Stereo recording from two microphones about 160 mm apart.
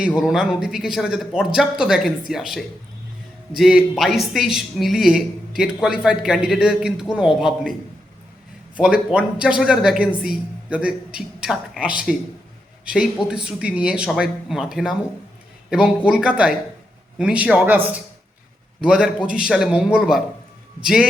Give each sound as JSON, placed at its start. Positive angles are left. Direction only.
{"t": 0.2, "sound": "a woman's voice", "side_deg": -5}